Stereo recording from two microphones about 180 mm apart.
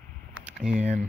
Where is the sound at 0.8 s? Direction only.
40° right (ahead or behind).